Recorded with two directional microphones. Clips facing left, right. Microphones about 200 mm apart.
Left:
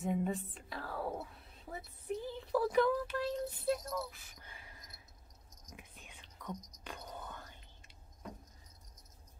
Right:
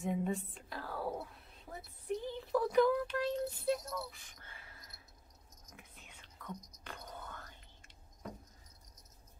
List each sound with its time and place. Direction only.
0.0 s whispering: centre (ahead or behind)
1.7 s speech: centre (ahead or behind)
4.4 s a sound: 15° left (ahead or behind)
6.4 s music: 15° left (ahead or behind)